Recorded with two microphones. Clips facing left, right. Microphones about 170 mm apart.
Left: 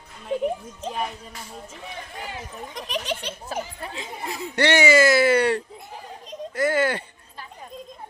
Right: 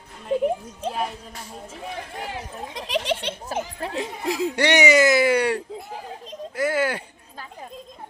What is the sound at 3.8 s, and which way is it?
Speech, 75° right (ahead or behind).